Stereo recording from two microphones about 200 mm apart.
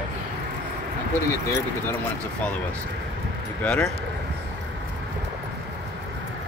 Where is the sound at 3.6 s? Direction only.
5° left (ahead or behind).